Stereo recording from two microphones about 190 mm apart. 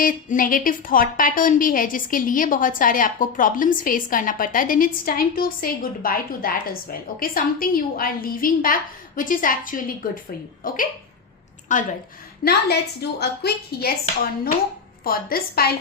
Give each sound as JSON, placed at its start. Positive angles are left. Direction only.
{"t": 0.0, "sound": "a woman's voice", "side_deg": 45}
{"t": 12.5, "sound": "a woman's voice", "side_deg": 60}